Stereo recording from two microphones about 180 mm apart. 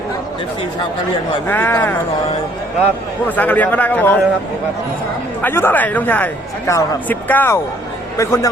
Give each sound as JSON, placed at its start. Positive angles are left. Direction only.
{"t": 1.5, "sound": "speech", "side_deg": 10}
{"t": 3.2, "sound": "speech", "side_deg": 10}
{"t": 5.4, "sound": "speech", "side_deg": 10}